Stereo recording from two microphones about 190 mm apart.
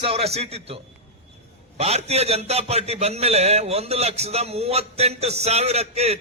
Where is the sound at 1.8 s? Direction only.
35° right (ahead or behind).